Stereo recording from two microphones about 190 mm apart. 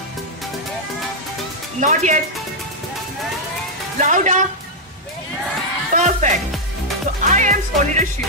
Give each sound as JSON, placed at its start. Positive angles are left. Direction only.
{"t": 1.8, "sound": "speech", "side_deg": -40}
{"t": 4.0, "sound": "speech", "side_deg": -40}
{"t": 5.9, "sound": "music", "side_deg": -40}
{"t": 7.2, "sound": "speech", "side_deg": -40}